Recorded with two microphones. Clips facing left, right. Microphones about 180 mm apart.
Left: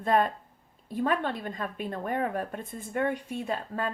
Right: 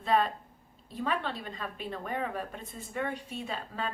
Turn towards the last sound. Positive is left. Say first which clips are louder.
# left 5 dB
turn(degrees=50)  # may be behind; listen again after turning